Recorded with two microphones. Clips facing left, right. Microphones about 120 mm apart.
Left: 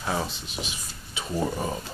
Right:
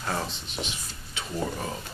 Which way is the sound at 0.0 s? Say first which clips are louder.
Left 2 dB; 5° left (ahead or behind).